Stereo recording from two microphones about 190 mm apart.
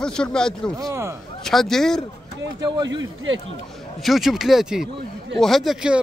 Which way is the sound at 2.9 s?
85° right.